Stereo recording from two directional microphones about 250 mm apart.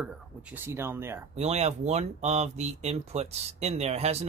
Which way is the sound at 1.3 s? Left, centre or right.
Right.